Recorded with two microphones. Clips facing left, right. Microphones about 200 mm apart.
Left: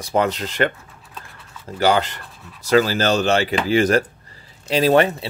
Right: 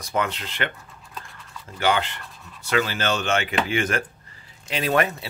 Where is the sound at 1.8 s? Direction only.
40° left (ahead or behind).